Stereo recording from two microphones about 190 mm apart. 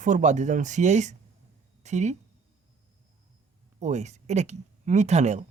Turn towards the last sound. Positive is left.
turn(degrees=-35)  # may be behind; listen again after turning